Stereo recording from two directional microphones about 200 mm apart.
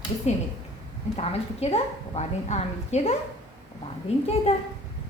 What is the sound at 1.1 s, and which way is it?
A woman's voice, 30° left (ahead or behind).